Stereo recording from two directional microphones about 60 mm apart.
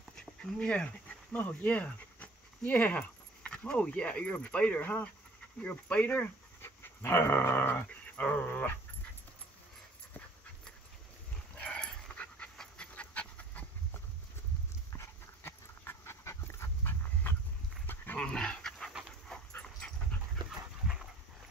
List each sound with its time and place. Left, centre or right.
0.1 s a sound: centre
1.4 s speech: left
6.6 s dog: left
7.9 s a sound: left
11.5 s dog: centre
14.9 s dog: left
17.3 s a sound: left
17.8 s dog: left
18.2 s dog: centre
20.4 s dog: centre